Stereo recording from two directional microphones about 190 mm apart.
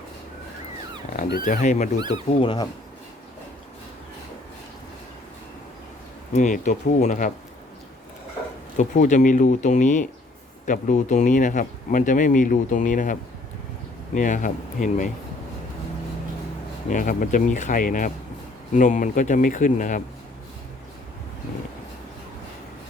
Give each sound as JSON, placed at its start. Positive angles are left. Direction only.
{"t": 1.3, "sound": "speech", "side_deg": 45}
{"t": 2.0, "sound": "speech", "side_deg": -25}
{"t": 2.4, "sound": "speech", "side_deg": 25}
{"t": 6.3, "sound": "speech", "side_deg": 40}
{"t": 8.8, "sound": "speech", "side_deg": 40}
{"t": 16.9, "sound": "speech", "side_deg": 45}